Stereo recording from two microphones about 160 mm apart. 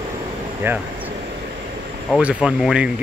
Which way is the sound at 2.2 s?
5° right (ahead or behind).